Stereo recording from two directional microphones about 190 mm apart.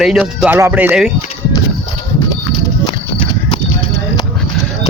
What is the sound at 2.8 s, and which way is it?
Horse, 30° left (ahead or behind).